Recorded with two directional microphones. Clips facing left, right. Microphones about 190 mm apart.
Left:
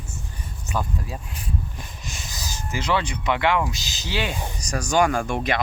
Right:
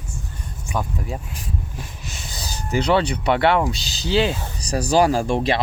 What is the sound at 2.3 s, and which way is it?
Speech, 35° right (ahead or behind).